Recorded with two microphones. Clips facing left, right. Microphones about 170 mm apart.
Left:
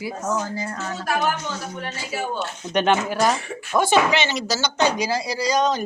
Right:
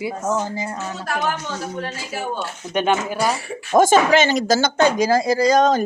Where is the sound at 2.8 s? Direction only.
10° right (ahead or behind).